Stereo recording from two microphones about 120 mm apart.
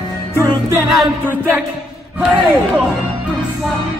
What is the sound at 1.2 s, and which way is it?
Speech, 15° right (ahead or behind).